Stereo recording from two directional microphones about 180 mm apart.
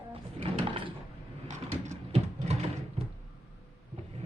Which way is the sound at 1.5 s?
40° right (ahead or behind).